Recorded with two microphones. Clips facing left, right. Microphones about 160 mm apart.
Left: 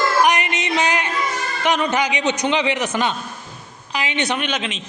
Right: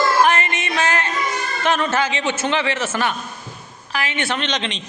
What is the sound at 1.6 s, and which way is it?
A man's voice, 15° left (ahead or behind).